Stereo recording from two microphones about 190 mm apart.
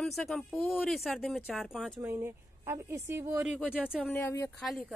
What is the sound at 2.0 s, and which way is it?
A woman's voice, 10° right (ahead or behind).